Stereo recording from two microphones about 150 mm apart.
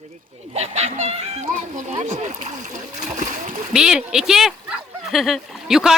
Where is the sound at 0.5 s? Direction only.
45° right (ahead or behind).